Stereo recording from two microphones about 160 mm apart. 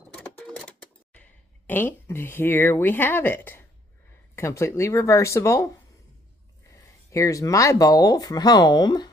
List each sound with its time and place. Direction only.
0.2 s cash register: 10° left (ahead or behind)
4.4 s speech: 15° left (ahead or behind)
7.1 s speech: 20° left (ahead or behind)